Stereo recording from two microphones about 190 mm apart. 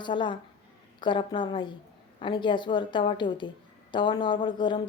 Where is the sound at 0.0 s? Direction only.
25° left (ahead or behind).